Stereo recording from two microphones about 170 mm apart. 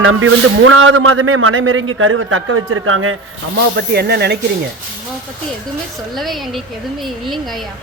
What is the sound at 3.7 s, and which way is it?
Speech, 70° right (ahead or behind).